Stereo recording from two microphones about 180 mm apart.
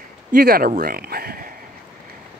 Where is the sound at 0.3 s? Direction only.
55° right (ahead or behind).